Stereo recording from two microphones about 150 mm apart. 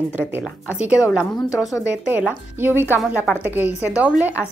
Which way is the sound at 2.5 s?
15° right (ahead or behind).